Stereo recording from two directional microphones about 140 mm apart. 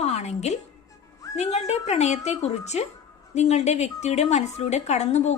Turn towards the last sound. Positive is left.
turn(degrees=55)  # may be behind; listen again after turning